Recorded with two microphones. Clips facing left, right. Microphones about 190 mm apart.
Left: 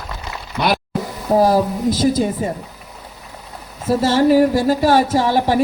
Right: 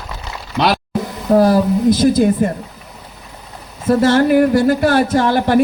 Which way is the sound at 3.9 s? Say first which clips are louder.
Right 2 dB; 55° right (ahead or behind).